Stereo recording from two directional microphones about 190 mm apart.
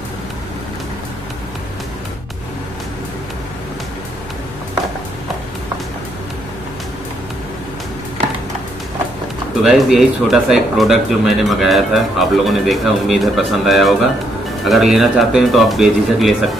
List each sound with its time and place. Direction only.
9.6 s speech: centre (ahead or behind)